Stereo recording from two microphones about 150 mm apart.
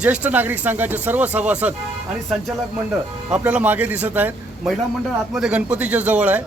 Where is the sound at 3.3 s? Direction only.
10° right (ahead or behind).